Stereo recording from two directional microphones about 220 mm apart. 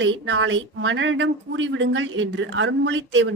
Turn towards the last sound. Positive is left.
turn(degrees=-55)  # may be behind; listen again after turning